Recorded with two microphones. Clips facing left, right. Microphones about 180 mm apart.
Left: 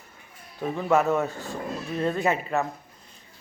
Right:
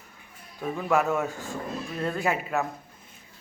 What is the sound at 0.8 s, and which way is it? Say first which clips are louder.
A man's voice: left 2 dB; centre (ahead or behind).